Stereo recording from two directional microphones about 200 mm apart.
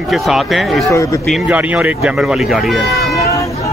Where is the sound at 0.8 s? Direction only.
15° left (ahead or behind).